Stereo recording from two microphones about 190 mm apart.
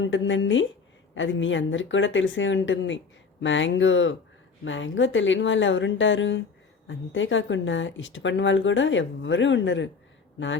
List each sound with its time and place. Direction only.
0.0 s speech: 80° left